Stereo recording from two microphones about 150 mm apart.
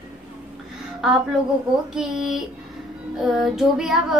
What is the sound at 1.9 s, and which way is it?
Child singing, 5° right (ahead or behind).